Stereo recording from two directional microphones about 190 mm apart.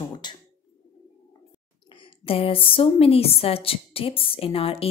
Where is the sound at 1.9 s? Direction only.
25° left (ahead or behind).